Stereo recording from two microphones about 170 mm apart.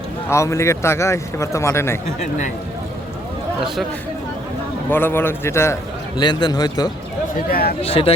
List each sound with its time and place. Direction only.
0.3 s a man's voice: 15° left (ahead or behind)
4.9 s a man's voice: 10° left (ahead or behind)
7.5 s speech: 65° left (ahead or behind)
7.8 s speech: 35° left (ahead or behind)